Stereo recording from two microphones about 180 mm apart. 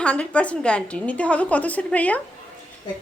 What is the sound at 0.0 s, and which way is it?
A woman's voice, 5° left (ahead or behind).